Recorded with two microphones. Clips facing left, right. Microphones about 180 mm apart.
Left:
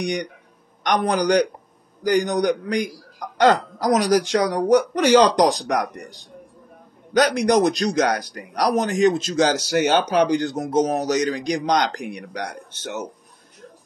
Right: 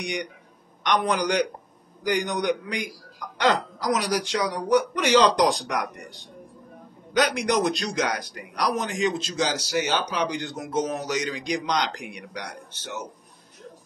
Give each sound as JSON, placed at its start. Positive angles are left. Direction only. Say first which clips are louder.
{"t": 0.8, "sound": "speech", "louder": "left 4 dB", "side_deg": 40}
{"t": 7.2, "sound": "speech", "louder": "left 6 dB", "side_deg": 40}
{"t": 9.3, "sound": "speech", "louder": "left 7 dB", "side_deg": 60}